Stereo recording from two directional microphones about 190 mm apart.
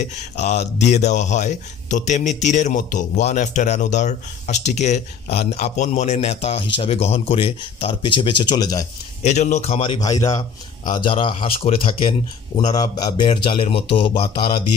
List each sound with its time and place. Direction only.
0.0 s speech: 35° left (ahead or behind); by 8.8 s 20° left (ahead or behind)
9.2 s speech: 40° left (ahead or behind); by 14.5 s 25° left (ahead or behind)